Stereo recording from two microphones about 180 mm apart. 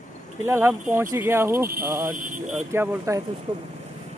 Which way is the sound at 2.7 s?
15° right (ahead or behind).